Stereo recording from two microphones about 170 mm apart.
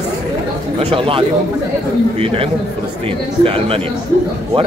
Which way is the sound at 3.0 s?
35° right (ahead or behind).